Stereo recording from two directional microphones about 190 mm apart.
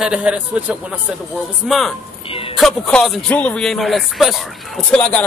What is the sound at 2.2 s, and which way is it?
Speech, 30° left (ahead or behind).